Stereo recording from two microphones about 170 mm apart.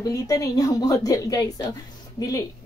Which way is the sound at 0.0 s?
20° left (ahead or behind).